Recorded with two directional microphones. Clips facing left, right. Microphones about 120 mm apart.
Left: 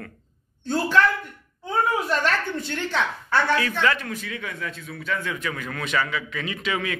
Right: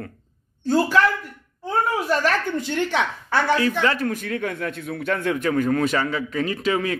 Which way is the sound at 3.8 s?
30° right (ahead or behind).